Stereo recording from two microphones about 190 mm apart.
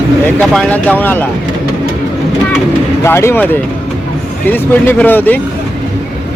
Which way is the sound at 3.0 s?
15° left (ahead or behind).